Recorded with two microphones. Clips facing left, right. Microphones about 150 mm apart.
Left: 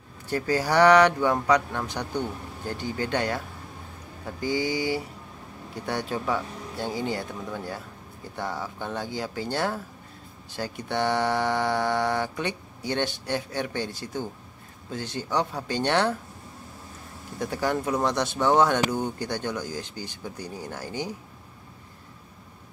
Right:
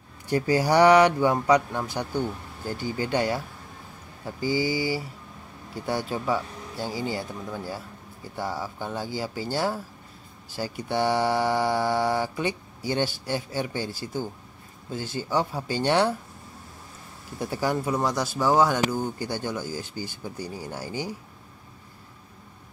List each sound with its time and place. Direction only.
0.3 s speech: 10° right (ahead or behind)
17.4 s speech: 10° right (ahead or behind)